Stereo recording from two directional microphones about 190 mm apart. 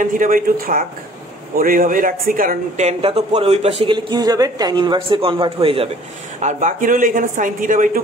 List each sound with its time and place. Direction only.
0.0 s speech: 45° right (ahead or behind); by 5.9 s 30° right (ahead or behind)
6.4 s speech: 40° right (ahead or behind)